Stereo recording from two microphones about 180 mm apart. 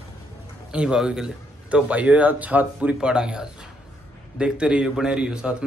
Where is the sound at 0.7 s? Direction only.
5° right (ahead or behind).